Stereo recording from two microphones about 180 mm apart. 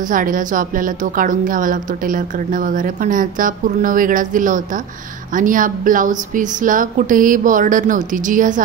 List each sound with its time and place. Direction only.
0.0 s a woman's voice: 50° right (ahead or behind)